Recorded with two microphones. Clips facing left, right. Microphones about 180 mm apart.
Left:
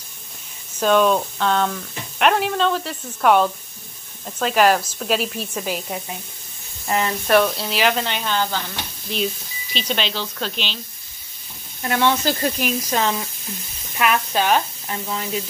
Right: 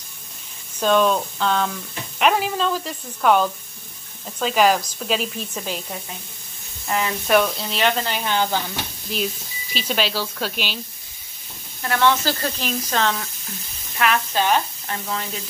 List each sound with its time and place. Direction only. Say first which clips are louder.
0.7 s speech: left 1 dB; centre (ahead or behind)
8.3 s speech: right 1 dB; 15° right (ahead or behind)
9.8 s speech: right 1 dB; 5° right (ahead or behind)
11.8 s speech: even; 20° left (ahead or behind)